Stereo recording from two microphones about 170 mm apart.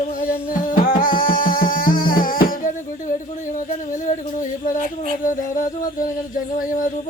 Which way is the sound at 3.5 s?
45° left (ahead or behind).